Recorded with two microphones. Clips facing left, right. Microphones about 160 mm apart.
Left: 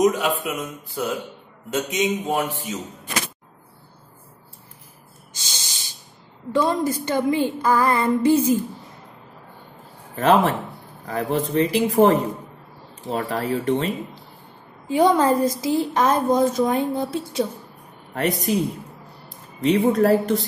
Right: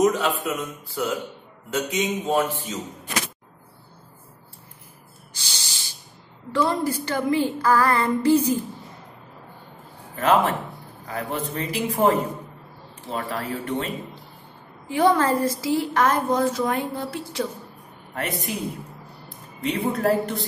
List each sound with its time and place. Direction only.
0.0 s speech: 15° left (ahead or behind)
5.3 s spray: 20° left (ahead or behind)
6.5 s a woman's voice: 20° left (ahead or behind)
10.1 s a man's voice: 40° left (ahead or behind)
14.9 s a woman's voice: 20° left (ahead or behind)
19.6 s a man's voice: 40° left (ahead or behind)